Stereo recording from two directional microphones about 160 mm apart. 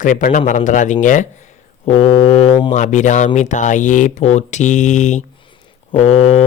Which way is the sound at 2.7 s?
50° left (ahead or behind).